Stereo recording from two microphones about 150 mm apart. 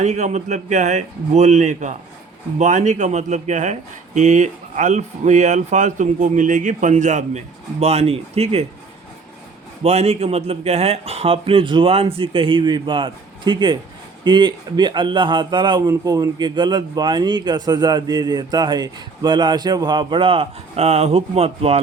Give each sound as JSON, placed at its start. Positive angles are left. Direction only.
{"t": 0.0, "sound": "speech", "side_deg": -50}
{"t": 9.8, "sound": "a man's voice", "side_deg": -45}